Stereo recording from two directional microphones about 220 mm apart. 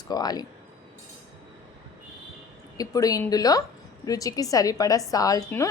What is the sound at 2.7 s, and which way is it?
A woman's voice, 15° left (ahead or behind).